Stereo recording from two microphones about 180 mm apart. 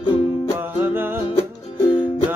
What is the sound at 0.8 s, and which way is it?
Music, 10° right (ahead or behind).